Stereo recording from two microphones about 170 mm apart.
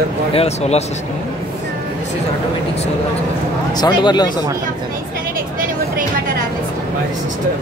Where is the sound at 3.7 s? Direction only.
25° left (ahead or behind).